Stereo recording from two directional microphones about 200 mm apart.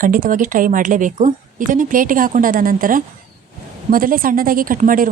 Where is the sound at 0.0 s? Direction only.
40° right (ahead or behind).